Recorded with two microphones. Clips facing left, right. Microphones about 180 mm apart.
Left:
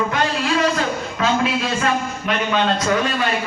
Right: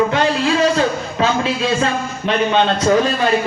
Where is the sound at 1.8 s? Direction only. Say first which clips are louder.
Right 2 dB; 30° right (ahead or behind).